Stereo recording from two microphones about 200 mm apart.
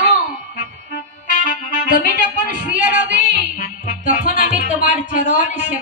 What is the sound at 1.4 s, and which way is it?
Music, 40° left (ahead or behind).